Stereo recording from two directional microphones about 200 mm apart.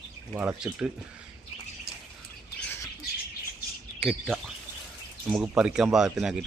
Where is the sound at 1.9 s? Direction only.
50° right (ahead or behind).